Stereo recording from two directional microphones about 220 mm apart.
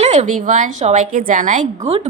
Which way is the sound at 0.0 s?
30° right (ahead or behind).